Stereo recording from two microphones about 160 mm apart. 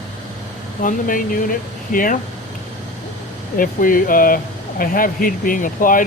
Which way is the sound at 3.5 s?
60° left (ahead or behind).